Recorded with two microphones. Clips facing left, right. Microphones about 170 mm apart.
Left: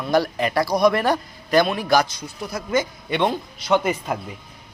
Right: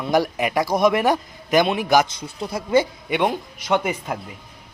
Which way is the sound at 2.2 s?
25° right (ahead or behind).